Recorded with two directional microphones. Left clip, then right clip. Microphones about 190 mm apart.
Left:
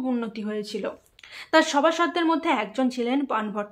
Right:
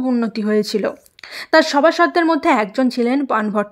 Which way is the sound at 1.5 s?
35° right (ahead or behind).